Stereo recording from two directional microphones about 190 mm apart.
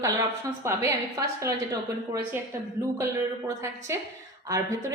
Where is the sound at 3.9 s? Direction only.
15° right (ahead or behind).